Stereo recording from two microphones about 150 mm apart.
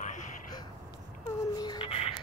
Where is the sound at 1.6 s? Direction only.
30° left (ahead or behind).